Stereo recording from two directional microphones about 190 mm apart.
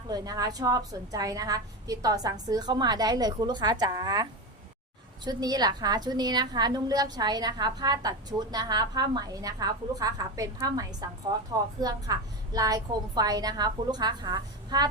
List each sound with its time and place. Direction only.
0.1 s a woman's voice: 20° right (ahead or behind)